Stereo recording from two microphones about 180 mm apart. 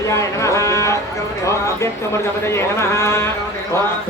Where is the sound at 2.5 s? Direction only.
15° left (ahead or behind).